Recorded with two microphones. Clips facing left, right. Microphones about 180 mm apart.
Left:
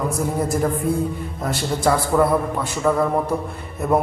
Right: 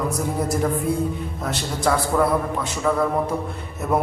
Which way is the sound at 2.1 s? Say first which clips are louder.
Left 3 dB; 5° left (ahead or behind).